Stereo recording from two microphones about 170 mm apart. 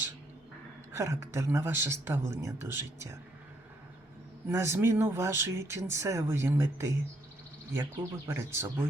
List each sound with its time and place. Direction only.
0.9 s speech: 15° right (ahead or behind)
4.4 s speech: 15° right (ahead or behind)